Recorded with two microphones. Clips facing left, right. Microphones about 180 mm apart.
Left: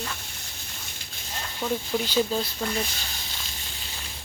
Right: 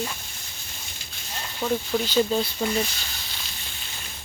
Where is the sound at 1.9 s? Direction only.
5° left (ahead or behind).